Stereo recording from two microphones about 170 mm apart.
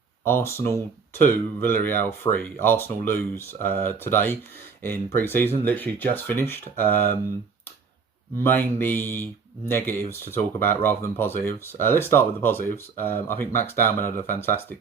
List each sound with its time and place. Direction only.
0.3 s speech: 15° left (ahead or behind)
8.4 s speech: 10° left (ahead or behind)